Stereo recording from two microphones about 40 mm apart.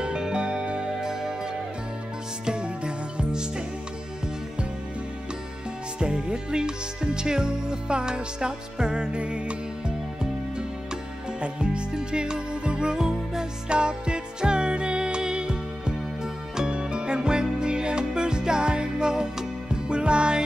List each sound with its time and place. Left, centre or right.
0.0 s music: right
5.9 s music: right
11.4 s music: right